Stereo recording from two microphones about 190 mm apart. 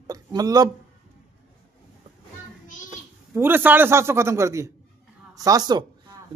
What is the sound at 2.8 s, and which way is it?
A man's voice, 10° right (ahead or behind).